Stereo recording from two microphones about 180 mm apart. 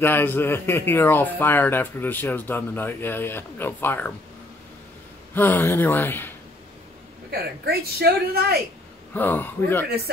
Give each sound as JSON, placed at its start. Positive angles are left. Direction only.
{"t": 0.0, "sound": "speech", "side_deg": 10}
{"t": 5.3, "sound": "speech", "side_deg": 10}
{"t": 7.2, "sound": "a woman's voice", "side_deg": -60}
{"t": 9.1, "sound": "speech", "side_deg": 10}